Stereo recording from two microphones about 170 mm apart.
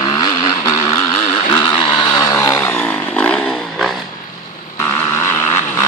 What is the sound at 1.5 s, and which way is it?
Vehicle, 30° left (ahead or behind).